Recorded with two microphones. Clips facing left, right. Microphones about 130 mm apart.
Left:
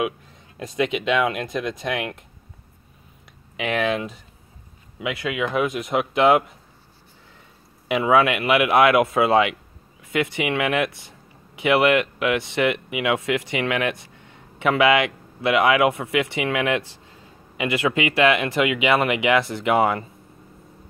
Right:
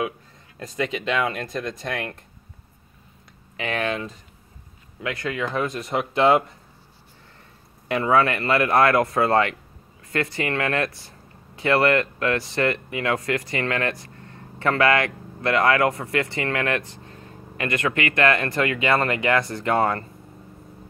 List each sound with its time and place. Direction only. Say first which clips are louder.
0.8 s speech: left 3 dB; 15° left (ahead or behind)
3.5 s speech: left 3 dB; 15° left (ahead or behind)
7.9 s speech: left 2 dB; 10° left (ahead or behind)
12.7 s speech: left 2 dB; 10° left (ahead or behind)
16.5 s speech: left 3 dB; 15° left (ahead or behind)